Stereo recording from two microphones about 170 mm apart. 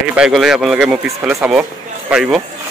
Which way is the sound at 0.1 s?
5° right (ahead or behind).